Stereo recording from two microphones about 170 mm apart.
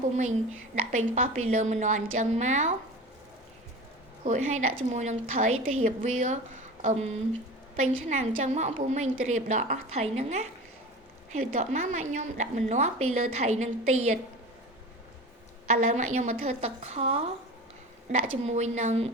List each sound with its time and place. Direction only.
0.9 s a woman's voice: 45° right (ahead or behind)
4.2 s a woman's voice: 45° right (ahead or behind)
15.6 s a woman's voice: 40° right (ahead or behind)